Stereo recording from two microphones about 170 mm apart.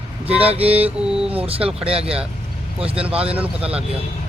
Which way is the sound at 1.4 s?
35° right (ahead or behind).